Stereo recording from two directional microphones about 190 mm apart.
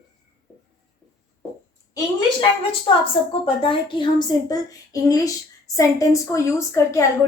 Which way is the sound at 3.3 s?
30° left (ahead or behind).